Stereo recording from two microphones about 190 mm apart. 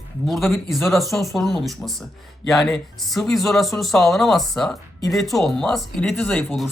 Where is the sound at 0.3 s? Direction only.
Centre (ahead or behind).